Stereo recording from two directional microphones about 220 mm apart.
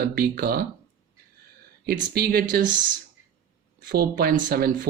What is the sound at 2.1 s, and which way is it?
Speech, 45° right (ahead or behind).